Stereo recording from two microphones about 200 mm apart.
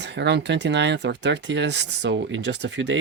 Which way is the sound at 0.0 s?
60° right (ahead or behind).